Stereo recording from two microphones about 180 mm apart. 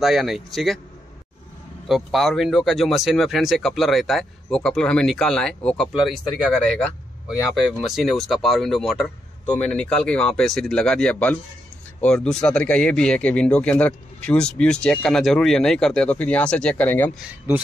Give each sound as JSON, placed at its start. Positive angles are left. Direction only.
{"t": 0.0, "sound": "speech", "side_deg": 0}
{"t": 1.9, "sound": "speech", "side_deg": 0}